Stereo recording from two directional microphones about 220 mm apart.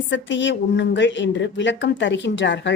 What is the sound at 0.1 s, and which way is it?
Speech, 55° left (ahead or behind).